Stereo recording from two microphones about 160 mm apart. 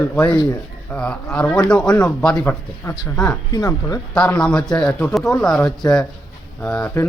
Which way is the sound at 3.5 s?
20° left (ahead or behind).